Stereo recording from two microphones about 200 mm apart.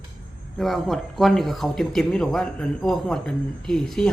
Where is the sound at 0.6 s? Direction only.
Centre (ahead or behind).